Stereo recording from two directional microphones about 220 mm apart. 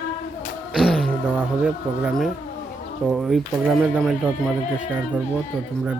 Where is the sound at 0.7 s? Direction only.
Centre (ahead or behind).